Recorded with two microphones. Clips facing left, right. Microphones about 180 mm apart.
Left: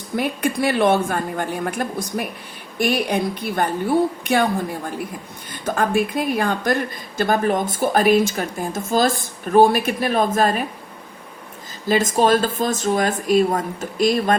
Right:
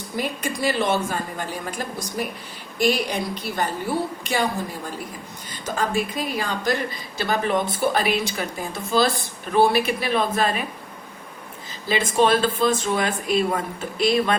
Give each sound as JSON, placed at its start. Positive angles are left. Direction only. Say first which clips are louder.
{"t": 0.2, "sound": "a woman's voice", "louder": "left 5 dB", "side_deg": 60}
{"t": 11.9, "sound": "speech", "louder": "left 3 dB", "side_deg": 45}